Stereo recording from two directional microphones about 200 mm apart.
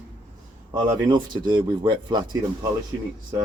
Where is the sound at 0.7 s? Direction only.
20° right (ahead or behind).